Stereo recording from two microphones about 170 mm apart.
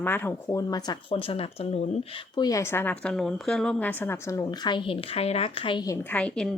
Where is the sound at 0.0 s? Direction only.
10° left (ahead or behind).